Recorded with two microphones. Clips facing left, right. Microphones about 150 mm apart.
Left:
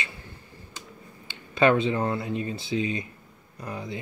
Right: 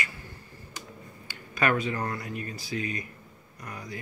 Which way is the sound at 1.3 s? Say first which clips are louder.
Left 6 dB; 25° left (ahead or behind).